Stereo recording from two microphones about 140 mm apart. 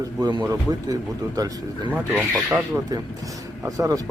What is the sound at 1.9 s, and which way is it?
Speech, 10° right (ahead or behind).